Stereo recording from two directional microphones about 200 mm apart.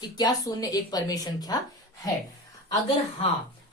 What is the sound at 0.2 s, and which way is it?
Speech, 20° left (ahead or behind).